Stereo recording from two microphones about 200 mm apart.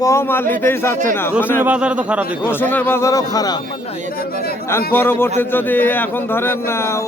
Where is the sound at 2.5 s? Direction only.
10° left (ahead or behind).